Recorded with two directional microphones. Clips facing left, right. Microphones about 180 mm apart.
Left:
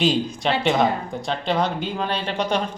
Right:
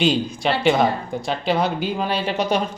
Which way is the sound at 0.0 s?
Centre (ahead or behind).